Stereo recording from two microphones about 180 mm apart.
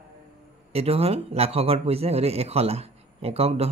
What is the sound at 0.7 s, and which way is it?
Speech, 35° right (ahead or behind).